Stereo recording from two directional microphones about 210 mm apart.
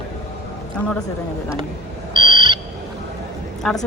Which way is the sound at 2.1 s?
20° right (ahead or behind).